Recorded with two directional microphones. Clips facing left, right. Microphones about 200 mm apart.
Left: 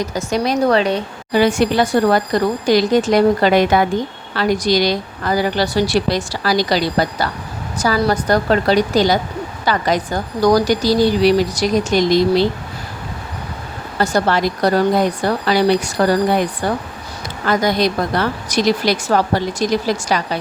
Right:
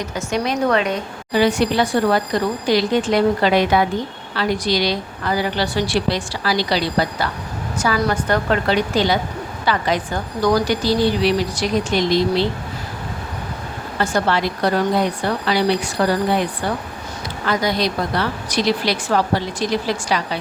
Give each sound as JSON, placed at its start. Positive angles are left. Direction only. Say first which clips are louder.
{"t": 0.1, "sound": "a woman's voice", "louder": "left 3 dB", "side_deg": 35}
{"t": 1.3, "sound": "a woman's voice", "louder": "left 2 dB", "side_deg": 50}
{"t": 14.0, "sound": "a woman's voice", "louder": "left 3 dB", "side_deg": 40}